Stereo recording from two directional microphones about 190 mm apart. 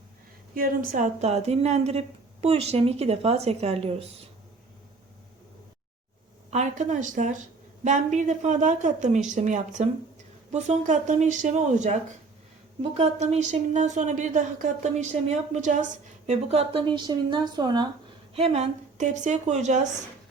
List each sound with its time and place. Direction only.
0.5 s a woman's voice: 50° right (ahead or behind); by 4.1 s 30° right (ahead or behind)
6.5 s a woman's voice: 40° right (ahead or behind); by 17.8 s 20° right (ahead or behind)
18.3 s a woman's voice: 35° right (ahead or behind)